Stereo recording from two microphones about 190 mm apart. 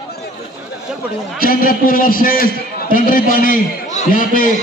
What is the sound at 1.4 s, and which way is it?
A man's voice, 50° left (ahead or behind).